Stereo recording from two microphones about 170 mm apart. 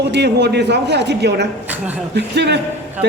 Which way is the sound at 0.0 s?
90° right.